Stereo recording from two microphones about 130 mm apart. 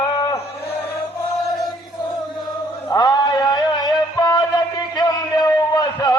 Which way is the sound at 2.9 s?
30° left (ahead or behind).